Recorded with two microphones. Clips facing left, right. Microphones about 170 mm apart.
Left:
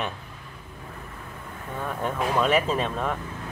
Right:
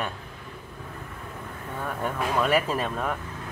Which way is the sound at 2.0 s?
5° right (ahead or behind).